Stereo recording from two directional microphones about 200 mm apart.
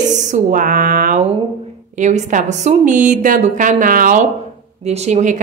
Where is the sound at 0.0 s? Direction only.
35° right (ahead or behind).